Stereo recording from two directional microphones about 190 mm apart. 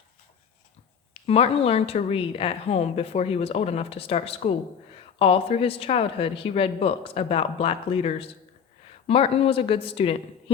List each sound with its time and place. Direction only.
1.1 s a woman's voice: 30° left (ahead or behind)